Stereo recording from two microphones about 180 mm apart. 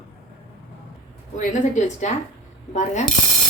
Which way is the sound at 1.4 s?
45° left (ahead or behind).